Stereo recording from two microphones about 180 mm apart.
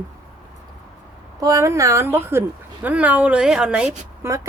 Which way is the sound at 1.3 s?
20° right (ahead or behind).